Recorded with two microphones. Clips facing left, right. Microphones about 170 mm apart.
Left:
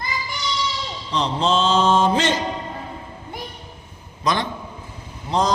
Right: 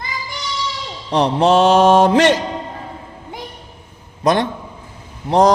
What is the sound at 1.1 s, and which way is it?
Mantra, 70° right (ahead or behind).